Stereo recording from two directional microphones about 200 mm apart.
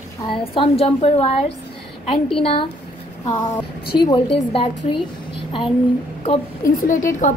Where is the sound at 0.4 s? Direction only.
25° left (ahead or behind).